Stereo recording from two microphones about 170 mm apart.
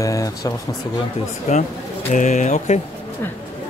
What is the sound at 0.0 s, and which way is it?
Speech, 20° left (ahead or behind).